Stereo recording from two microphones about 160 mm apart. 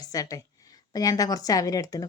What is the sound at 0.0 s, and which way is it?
Speech, 20° left (ahead or behind).